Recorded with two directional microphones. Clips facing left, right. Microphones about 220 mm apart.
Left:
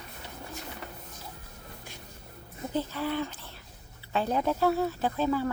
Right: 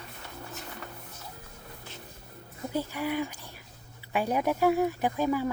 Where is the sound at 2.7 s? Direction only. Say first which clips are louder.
Even; 15° right (ahead or behind).